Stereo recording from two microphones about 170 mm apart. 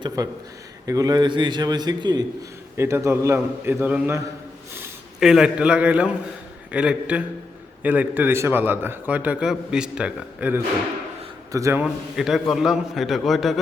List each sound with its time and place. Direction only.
0.2 s a man's voice: 20° right (ahead or behind)
5.2 s a man's voice: 5° right (ahead or behind)
11.5 s a man's voice: 20° right (ahead or behind)
11.8 s a man's voice: centre (ahead or behind)